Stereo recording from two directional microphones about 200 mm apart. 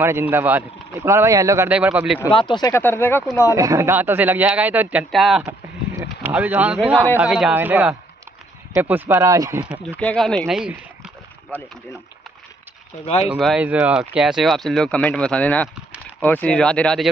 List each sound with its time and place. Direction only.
0.0 s speech: 10° right (ahead or behind)
2.3 s speech: 20° left (ahead or behind)
3.5 s speech: 15° right (ahead or behind)
9.9 s speech: 5° left (ahead or behind)
13.0 s speech: 30° left (ahead or behind)
13.3 s speech: 5° right (ahead or behind)